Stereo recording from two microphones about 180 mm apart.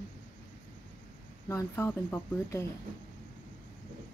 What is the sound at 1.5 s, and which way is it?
Speech, 15° left (ahead or behind).